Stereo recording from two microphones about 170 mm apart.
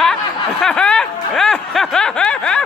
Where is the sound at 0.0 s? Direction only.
5° left (ahead or behind).